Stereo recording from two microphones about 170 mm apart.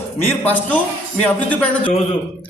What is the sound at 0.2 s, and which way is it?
Speech, 10° left (ahead or behind).